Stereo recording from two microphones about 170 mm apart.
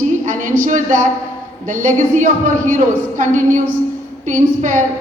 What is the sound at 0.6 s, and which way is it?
A woman's voice, 50° right (ahead or behind).